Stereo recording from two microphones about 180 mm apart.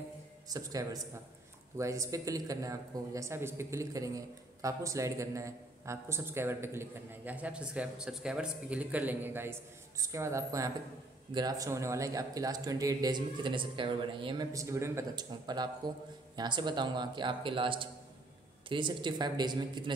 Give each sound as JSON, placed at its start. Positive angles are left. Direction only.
{"t": 0.5, "sound": "a man's voice", "side_deg": -20}